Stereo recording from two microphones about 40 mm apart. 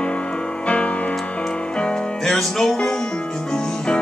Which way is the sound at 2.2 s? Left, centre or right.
Centre.